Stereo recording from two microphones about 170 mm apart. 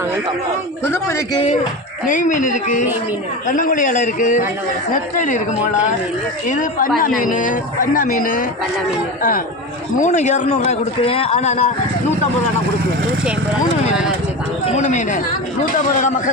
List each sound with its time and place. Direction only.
0.9 s a man's voice: 15° left (ahead or behind)
2.0 s speech: 50° left (ahead or behind)
10.0 s a man's voice: 45° left (ahead or behind)
14.8 s speech: 45° left (ahead or behind)